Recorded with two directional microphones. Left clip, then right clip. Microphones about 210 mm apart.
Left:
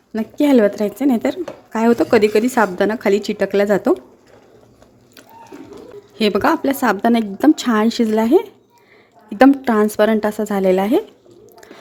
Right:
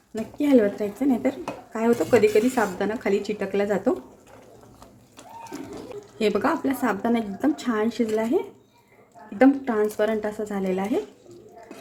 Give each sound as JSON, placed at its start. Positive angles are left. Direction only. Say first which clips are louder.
{"t": 0.1, "sound": "speech", "louder": "left 6 dB", "side_deg": 45}
{"t": 6.1, "sound": "speech", "louder": "left 7 dB", "side_deg": 40}